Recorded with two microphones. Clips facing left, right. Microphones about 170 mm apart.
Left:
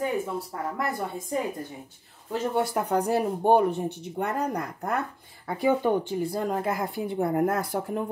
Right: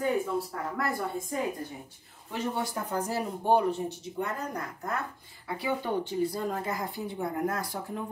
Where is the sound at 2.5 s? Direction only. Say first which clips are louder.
Left 9 dB; 65° left (ahead or behind).